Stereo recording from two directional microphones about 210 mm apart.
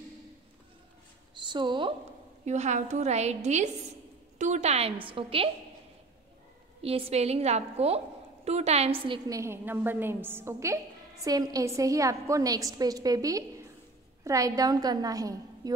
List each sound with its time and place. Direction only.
1.3 s a sound: 20° right (ahead or behind)
2.4 s a woman's voice: 35° right (ahead or behind)
6.8 s a woman's voice: 30° right (ahead or behind)
9.0 s a woman's voice: 20° right (ahead or behind)